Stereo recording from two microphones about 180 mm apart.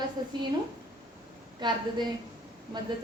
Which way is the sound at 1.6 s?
25° right (ahead or behind).